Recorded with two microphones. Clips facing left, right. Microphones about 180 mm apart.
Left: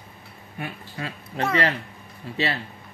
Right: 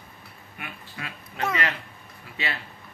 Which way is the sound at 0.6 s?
35° left (ahead or behind).